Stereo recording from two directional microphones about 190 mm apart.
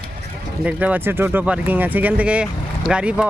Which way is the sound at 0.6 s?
10° right (ahead or behind).